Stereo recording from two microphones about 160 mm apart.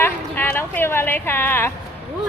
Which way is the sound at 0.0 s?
15° left (ahead or behind).